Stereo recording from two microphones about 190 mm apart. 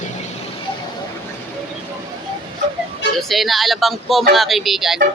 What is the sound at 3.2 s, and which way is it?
Speech, centre (ahead or behind).